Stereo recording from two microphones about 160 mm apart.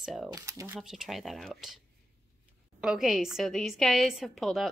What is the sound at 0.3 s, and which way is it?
Speech, 20° right (ahead or behind).